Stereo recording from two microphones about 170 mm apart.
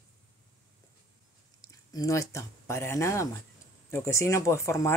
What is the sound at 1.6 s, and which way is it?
Speech, 20° left (ahead or behind).